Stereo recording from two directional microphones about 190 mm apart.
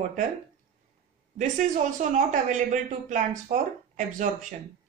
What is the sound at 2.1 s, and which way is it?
Speech, 40° right (ahead or behind).